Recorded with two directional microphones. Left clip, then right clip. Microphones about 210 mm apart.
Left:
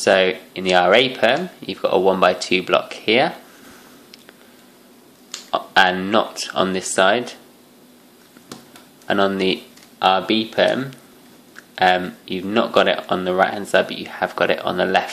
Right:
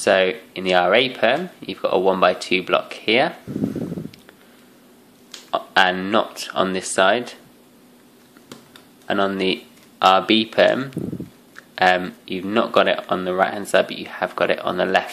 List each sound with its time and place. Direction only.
0.0 s speech: 5° right (ahead or behind)
5.5 s speech: 5° right (ahead or behind)
9.0 s speech: centre (ahead or behind)
9.9 s speech: 15° right (ahead or behind)